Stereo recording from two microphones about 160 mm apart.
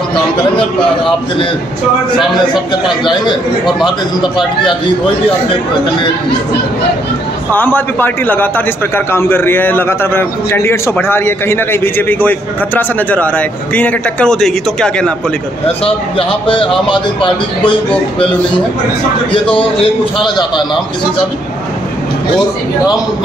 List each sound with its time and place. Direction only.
2.1 s speech: 30° left (ahead or behind)
7.5 s a man's voice: 10° left (ahead or behind)
15.6 s a man's voice: 35° left (ahead or behind)
19.3 s a man's voice: 35° left (ahead or behind)